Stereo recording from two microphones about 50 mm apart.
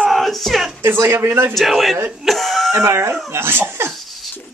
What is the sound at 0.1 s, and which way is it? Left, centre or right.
Music, centre.